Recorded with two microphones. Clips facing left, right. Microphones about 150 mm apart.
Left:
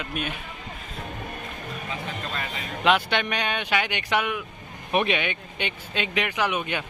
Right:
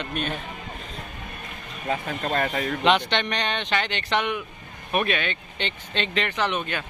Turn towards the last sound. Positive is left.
turn(degrees=15)  # may be behind; listen again after turning